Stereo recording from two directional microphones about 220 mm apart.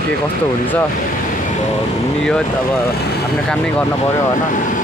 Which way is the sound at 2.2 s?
5° left (ahead or behind).